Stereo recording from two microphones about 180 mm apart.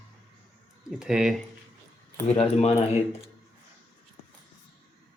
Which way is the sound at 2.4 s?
35° left (ahead or behind).